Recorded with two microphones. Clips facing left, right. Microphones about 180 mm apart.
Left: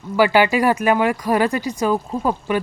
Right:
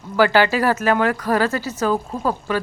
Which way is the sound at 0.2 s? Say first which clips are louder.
Left 1 dB; 10° left (ahead or behind).